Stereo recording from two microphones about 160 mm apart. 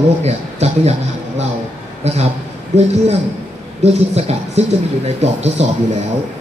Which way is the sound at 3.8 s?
40° right (ahead or behind).